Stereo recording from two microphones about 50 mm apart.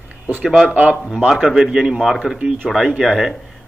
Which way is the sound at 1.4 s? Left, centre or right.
Centre.